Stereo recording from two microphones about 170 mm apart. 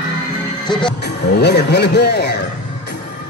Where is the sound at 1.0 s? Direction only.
80° left.